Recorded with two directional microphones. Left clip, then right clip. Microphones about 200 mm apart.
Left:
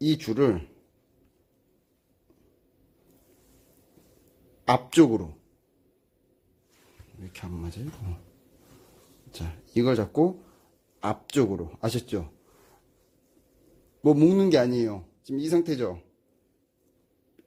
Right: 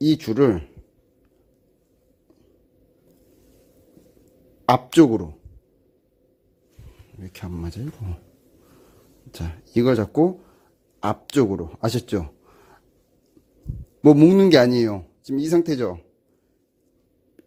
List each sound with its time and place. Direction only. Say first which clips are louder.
0.0 s speech: right 5 dB; 25° right (ahead or behind)
4.6 s speech: right 4 dB; 20° right (ahead or behind)
7.2 s speech: right 5 dB; 30° right (ahead or behind)
9.3 s speech: right 4 dB; 25° right (ahead or behind)
14.0 s speech: right 7 dB; 35° right (ahead or behind)